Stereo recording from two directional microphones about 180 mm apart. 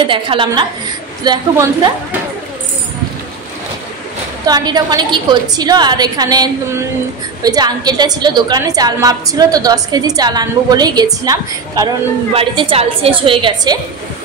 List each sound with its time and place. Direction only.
0.1 s a woman's voice: 30° right (ahead or behind)
4.5 s a woman's voice: 20° right (ahead or behind)
12.4 s a woman's voice: 30° right (ahead or behind)